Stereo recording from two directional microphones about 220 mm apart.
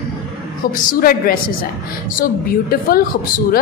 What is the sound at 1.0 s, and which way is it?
A woman's voice, 40° left (ahead or behind).